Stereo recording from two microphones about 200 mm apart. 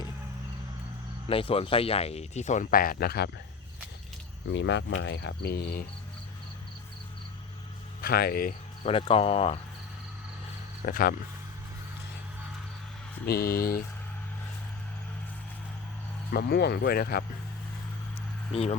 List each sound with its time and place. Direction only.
1.3 s speech: 30° left (ahead or behind); by 3.2 s 50° left (ahead or behind)
4.5 s cricket: 60° left (ahead or behind)
8.0 s speech: 50° left (ahead or behind)
8.8 s speech: 30° left (ahead or behind)
10.8 s speech: 45° left (ahead or behind)
13.2 s speech: 50° left (ahead or behind)
16.3 s speech: 50° left (ahead or behind)
18.5 s speech: 30° left (ahead or behind)